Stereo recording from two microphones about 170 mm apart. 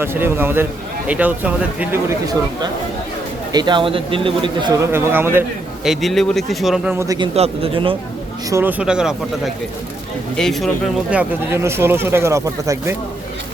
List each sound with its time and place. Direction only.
0.0 s speech: 15° right (ahead or behind)
3.5 s speech: 25° right (ahead or behind)
5.8 s a man's voice: centre (ahead or behind)
6.9 s speech: 15° right (ahead or behind)
7.2 s speech: 35° right (ahead or behind)
8.4 s speech: 15° right (ahead or behind)
8.8 s a man's voice: 5° right (ahead or behind)
10.3 s a man's voice: centre (ahead or behind)
11.1 s speech: 10° right (ahead or behind)